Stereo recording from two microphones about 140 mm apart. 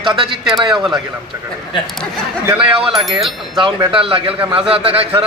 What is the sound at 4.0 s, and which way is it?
Speech, 40° right (ahead or behind).